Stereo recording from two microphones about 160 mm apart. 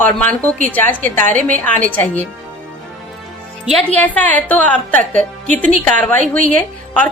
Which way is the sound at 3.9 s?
10° left (ahead or behind).